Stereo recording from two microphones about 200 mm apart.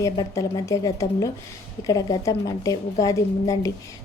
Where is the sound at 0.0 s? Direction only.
15° left (ahead or behind).